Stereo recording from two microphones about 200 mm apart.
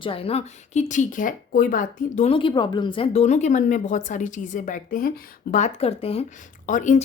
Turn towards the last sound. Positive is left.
turn(degrees=40)  # may be behind; listen again after turning